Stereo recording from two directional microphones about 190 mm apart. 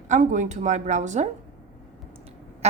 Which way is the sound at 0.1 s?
40° right (ahead or behind).